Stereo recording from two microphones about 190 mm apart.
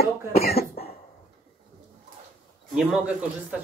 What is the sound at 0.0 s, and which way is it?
Speech, 55° left (ahead or behind).